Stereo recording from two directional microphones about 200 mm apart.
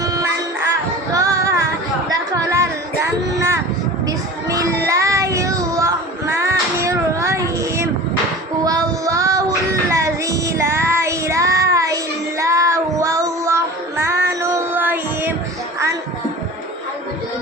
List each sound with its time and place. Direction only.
0.0 s music: 20° right (ahead or behind)
2.0 s a sound: 15° right (ahead or behind)
4.0 s child singing: 15° right (ahead or behind)
8.6 s female singing: 15° right (ahead or behind)
9.9 s child singing: 15° right (ahead or behind)
14.7 s music: 10° right (ahead or behind)